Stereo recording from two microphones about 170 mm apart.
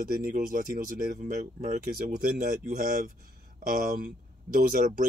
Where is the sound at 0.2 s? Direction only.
55° right (ahead or behind).